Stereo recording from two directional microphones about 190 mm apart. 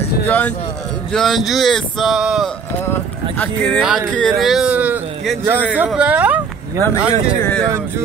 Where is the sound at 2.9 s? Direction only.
10° left (ahead or behind); by 6.8 s 10° right (ahead or behind).